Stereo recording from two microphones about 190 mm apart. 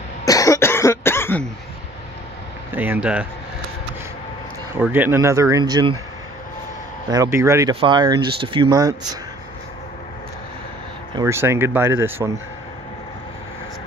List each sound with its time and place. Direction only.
0.2 s cough: 20° left (ahead or behind)
2.7 s speech: 10° right (ahead or behind)
4.7 s speech: 10° right (ahead or behind)
7.1 s speech: 15° right (ahead or behind)
11.1 s speech: 15° right (ahead or behind)